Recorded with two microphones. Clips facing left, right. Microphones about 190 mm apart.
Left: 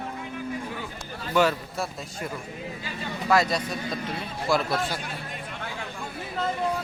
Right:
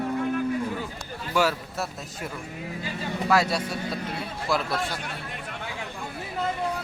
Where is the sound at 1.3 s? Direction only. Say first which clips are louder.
Left 2 dB; 5° right (ahead or behind).